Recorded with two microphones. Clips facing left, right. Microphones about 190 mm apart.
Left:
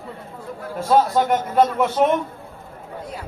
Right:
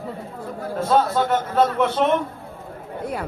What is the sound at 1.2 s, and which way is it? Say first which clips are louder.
Speech: left 1 dB; 10° left (ahead or behind).